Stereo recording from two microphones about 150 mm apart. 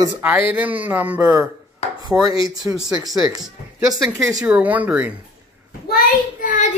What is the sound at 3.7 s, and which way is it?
Speech, 5° right (ahead or behind).